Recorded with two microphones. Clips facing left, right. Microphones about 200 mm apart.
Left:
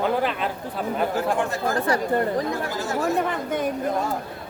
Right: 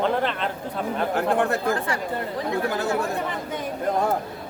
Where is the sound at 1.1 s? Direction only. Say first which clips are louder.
Right 2 dB; 60° right (ahead or behind).